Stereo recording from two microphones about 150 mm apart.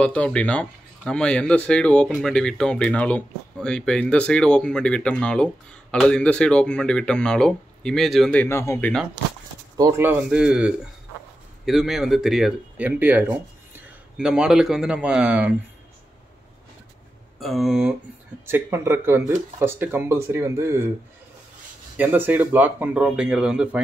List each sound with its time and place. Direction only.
0.0 s speech: 5° left (ahead or behind)
9.8 s speech: 20° right (ahead or behind)
17.4 s speech: centre (ahead or behind)
18.5 s speech: 15° right (ahead or behind)
21.9 s speech: 10° right (ahead or behind)